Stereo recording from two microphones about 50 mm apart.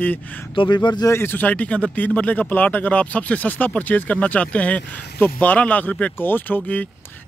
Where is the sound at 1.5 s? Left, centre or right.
Left.